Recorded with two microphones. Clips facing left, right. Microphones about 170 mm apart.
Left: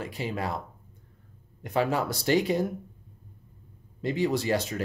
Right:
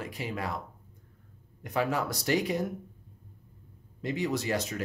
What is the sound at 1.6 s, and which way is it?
Speech, 30° left (ahead or behind).